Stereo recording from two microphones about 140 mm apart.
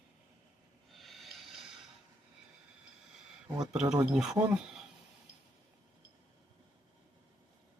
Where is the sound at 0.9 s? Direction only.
Centre (ahead or behind).